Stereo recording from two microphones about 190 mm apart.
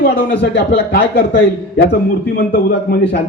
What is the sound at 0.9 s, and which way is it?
A man's voice, 60° left (ahead or behind).